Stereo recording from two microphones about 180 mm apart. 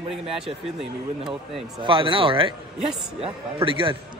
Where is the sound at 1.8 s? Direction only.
30° right (ahead or behind).